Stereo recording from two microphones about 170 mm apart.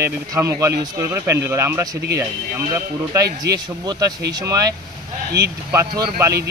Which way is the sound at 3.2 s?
75° right (ahead or behind).